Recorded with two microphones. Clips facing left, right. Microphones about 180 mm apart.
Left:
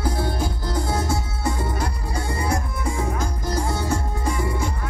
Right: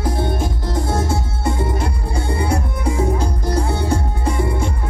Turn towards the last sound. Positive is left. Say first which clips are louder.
# right 4 dB
turn(degrees=-30)  # may be behind; listen again after turning